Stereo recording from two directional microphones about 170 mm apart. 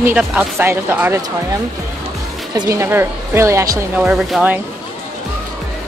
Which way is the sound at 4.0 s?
5° right (ahead or behind).